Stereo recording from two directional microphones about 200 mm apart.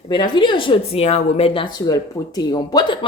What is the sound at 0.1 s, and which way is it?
A woman's voice, 25° left (ahead or behind).